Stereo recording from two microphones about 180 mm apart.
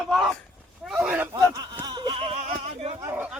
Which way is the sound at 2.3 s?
35° right (ahead or behind).